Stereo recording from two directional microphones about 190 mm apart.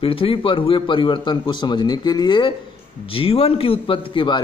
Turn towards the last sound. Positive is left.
turn(degrees=25)  # may be behind; listen again after turning